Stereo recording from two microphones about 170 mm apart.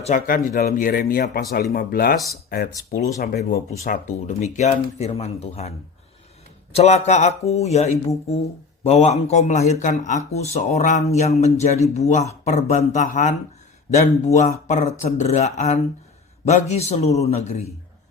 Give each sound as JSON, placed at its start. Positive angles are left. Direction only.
{"t": 0.0, "sound": "speech", "side_deg": 50}
{"t": 3.7, "sound": "speech", "side_deg": 45}
{"t": 6.7, "sound": "speech", "side_deg": 40}